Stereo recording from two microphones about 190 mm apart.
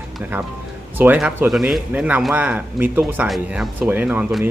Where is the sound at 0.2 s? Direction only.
10° right (ahead or behind).